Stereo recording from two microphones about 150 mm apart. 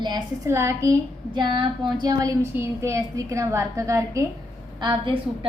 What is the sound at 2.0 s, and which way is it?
A woman's voice, 20° right (ahead or behind).